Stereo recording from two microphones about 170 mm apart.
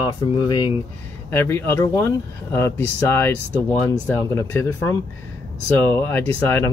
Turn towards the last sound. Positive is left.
turn(degrees=15)  # may be behind; listen again after turning